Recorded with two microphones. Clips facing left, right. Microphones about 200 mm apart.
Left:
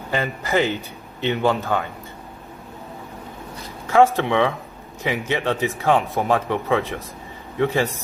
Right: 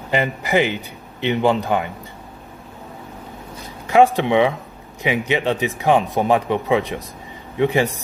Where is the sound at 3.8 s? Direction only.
15° right (ahead or behind).